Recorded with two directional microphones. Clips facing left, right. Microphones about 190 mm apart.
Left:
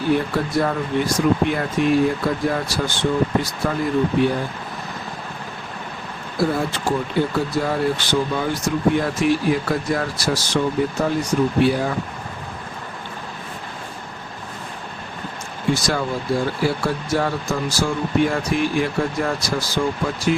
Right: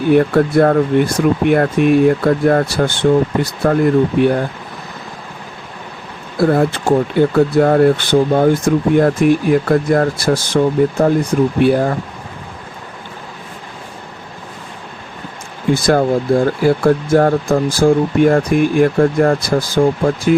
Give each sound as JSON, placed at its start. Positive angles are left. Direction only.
{"t": 0.1, "sound": "speech", "side_deg": -55}
{"t": 6.5, "sound": "speech", "side_deg": -60}
{"t": 15.7, "sound": "speech", "side_deg": -55}